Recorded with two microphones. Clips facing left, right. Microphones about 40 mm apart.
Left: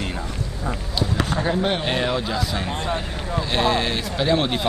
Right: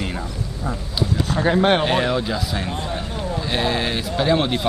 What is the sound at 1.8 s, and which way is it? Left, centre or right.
Speech, centre.